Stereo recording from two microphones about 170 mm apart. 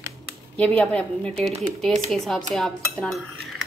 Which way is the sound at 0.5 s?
5° left (ahead or behind).